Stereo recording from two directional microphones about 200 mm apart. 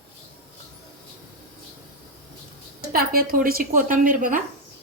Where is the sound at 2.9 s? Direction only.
50° right (ahead or behind).